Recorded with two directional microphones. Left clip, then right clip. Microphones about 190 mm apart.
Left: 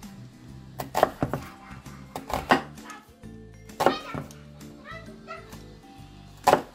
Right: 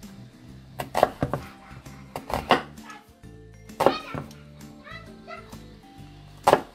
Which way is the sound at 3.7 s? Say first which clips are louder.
Right 2 dB; centre (ahead or behind).